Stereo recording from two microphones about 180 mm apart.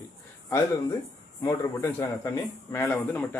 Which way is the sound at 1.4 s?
15° left (ahead or behind).